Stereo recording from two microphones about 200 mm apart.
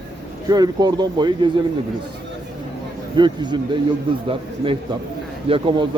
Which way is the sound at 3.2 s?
25° right (ahead or behind).